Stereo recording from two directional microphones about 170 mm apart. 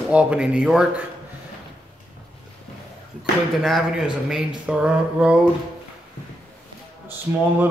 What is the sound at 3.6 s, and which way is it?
Speech, centre (ahead or behind).